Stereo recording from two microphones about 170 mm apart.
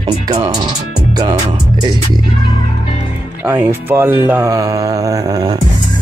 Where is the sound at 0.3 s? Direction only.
25° right (ahead or behind).